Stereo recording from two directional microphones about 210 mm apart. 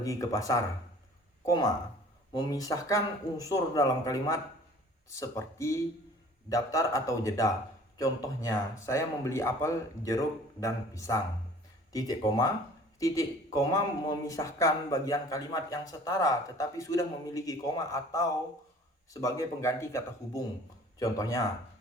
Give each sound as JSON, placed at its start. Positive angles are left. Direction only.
{"t": 0.0, "sound": "speech", "side_deg": 15}